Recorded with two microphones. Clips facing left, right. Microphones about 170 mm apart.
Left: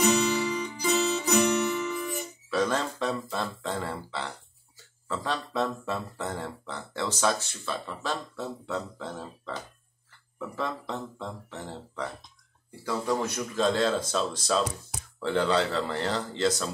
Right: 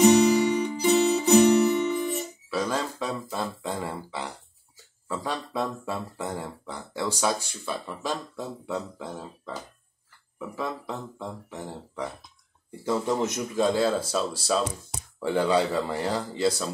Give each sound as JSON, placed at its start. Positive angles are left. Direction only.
{"t": 0.7, "sound": "music", "side_deg": -30}
{"t": 2.5, "sound": "a sound", "side_deg": -10}
{"t": 12.8, "sound": "speech", "side_deg": -20}